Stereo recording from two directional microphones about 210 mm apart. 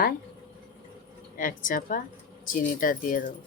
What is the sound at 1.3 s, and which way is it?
A woman's voice, 40° left (ahead or behind).